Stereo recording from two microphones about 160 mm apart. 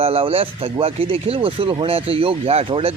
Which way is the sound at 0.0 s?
35° right (ahead or behind).